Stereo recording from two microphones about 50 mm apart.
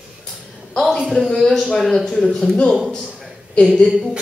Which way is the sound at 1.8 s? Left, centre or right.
Centre.